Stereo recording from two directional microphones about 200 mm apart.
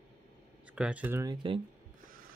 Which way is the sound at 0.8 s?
5° right (ahead or behind).